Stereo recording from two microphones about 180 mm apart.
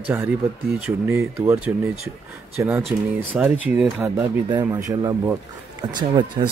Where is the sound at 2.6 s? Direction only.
10° right (ahead or behind).